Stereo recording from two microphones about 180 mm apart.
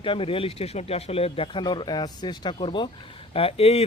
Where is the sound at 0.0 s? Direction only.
30° left (ahead or behind).